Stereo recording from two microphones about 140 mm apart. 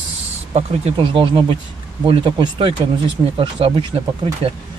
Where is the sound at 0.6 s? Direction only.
45° right (ahead or behind).